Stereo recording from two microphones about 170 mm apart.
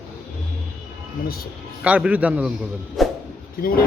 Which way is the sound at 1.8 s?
10° right (ahead or behind).